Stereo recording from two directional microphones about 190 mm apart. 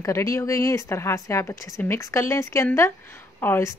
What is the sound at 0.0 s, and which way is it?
Speech, 15° left (ahead or behind).